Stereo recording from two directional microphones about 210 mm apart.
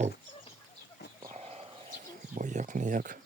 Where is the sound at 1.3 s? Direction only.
30° right (ahead or behind).